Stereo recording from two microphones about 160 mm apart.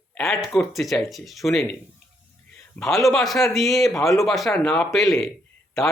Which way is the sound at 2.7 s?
5° left (ahead or behind).